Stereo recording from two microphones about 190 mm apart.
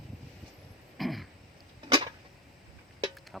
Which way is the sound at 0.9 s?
Centre (ahead or behind).